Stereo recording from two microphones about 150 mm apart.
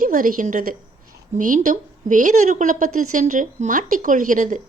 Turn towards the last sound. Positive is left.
turn(degrees=-60)  # may be behind; listen again after turning